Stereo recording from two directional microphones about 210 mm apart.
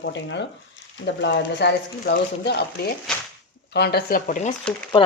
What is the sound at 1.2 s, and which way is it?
Speech, 50° left (ahead or behind).